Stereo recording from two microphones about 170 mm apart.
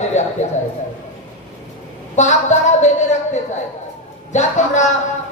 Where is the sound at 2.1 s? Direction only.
45° left (ahead or behind).